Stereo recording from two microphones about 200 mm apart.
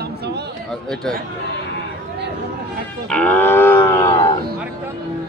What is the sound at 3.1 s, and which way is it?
Livestock, 5° left (ahead or behind).